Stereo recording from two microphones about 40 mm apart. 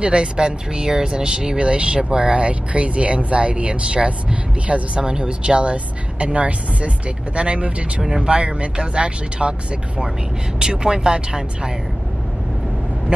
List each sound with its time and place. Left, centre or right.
0.0 s speech: right
8.0 s speech: centre
8.3 s speech: right